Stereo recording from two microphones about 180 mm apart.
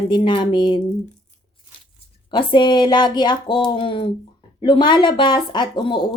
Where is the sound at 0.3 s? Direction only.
25° left (ahead or behind).